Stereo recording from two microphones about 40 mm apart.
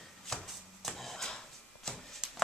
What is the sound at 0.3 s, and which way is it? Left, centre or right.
Shuffle, centre.